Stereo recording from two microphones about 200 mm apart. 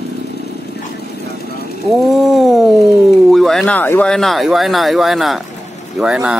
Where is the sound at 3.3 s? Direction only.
Centre (ahead or behind).